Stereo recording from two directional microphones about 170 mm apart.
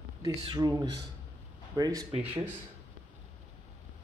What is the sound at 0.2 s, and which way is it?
Speech, 20° right (ahead or behind).